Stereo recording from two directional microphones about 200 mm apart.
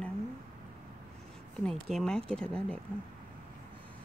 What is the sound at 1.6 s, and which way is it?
Speech, centre (ahead or behind).